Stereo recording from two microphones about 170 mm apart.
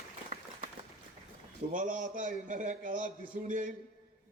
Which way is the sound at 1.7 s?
50° right (ahead or behind).